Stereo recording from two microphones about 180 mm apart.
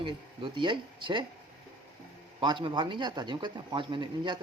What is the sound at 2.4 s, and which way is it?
Speech, 25° right (ahead or behind).